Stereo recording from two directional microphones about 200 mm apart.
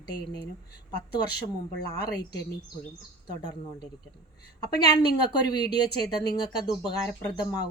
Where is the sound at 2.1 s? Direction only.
20° left (ahead or behind).